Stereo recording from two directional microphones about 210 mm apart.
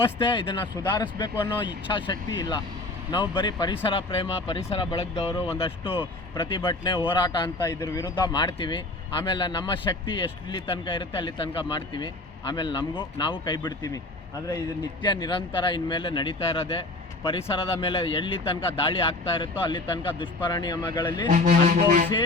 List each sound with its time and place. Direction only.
0.0 s speech: 25° left (ahead or behind)
15.0 s speech: 20° left (ahead or behind)
21.2 s a sound: 35° right (ahead or behind)